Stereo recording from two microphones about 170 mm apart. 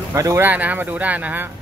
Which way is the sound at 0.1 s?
20° right (ahead or behind).